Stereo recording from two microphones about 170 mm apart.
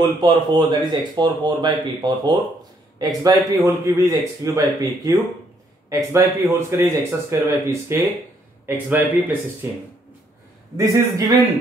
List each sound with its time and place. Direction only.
0.0 s speech: 25° right (ahead or behind)